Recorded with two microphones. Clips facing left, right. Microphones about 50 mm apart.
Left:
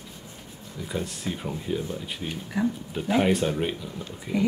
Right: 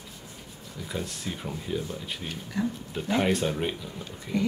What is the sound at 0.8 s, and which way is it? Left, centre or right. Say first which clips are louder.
Speech: left 3 dB; centre.